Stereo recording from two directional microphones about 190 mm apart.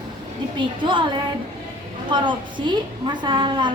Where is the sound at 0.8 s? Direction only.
25° right (ahead or behind).